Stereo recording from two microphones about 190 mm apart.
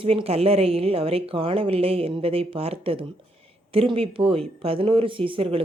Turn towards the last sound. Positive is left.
turn(degrees=-30)  # may be behind; listen again after turning